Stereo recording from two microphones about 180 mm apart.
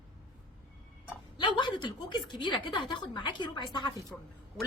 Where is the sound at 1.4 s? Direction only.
25° left (ahead or behind).